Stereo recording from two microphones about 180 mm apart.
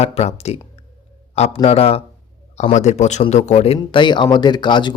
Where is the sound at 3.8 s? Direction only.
25° left (ahead or behind).